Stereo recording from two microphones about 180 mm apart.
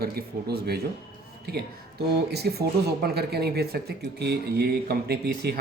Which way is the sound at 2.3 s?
60° right (ahead or behind).